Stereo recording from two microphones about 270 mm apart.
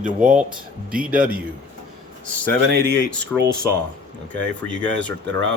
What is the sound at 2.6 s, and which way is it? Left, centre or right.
Speech, right.